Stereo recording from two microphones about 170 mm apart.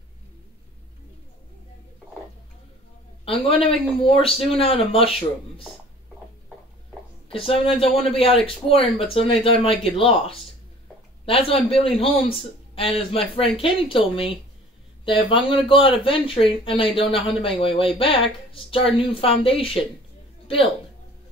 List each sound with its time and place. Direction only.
3.3 s speech: 35° left (ahead or behind)
7.2 s speech: 35° left (ahead or behind)